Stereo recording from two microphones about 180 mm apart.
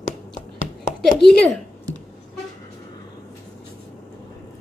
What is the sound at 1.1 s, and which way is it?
Speech, 5° left (ahead or behind).